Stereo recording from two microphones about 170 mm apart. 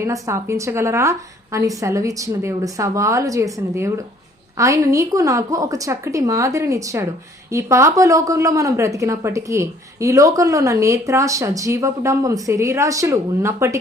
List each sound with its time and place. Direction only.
0.0 s a woman's voice: 15° right (ahead or behind)